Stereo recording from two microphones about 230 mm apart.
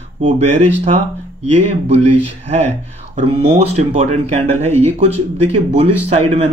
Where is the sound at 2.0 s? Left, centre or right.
Right.